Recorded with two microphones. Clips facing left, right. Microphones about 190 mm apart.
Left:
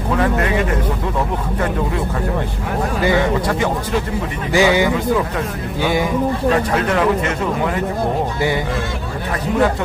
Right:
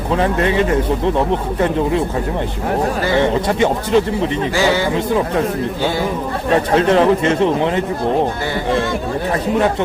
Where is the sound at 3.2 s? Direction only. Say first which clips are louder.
Right 3 dB; 25° right (ahead or behind).